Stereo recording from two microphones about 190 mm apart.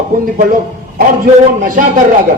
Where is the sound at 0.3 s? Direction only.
45° right (ahead or behind).